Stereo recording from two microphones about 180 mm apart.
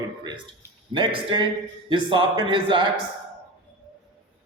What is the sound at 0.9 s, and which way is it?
A man's voice, 25° right (ahead or behind).